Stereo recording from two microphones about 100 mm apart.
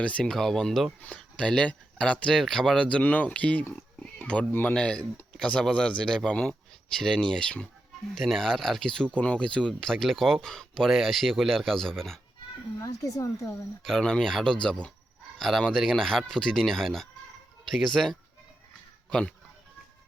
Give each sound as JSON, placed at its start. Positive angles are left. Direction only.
{"t": 0.0, "sound": "speech", "side_deg": 10}
{"t": 12.8, "sound": "speech", "side_deg": 35}
{"t": 13.8, "sound": "speech", "side_deg": 5}